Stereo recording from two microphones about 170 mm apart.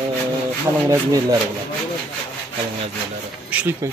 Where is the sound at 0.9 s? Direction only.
20° right (ahead or behind).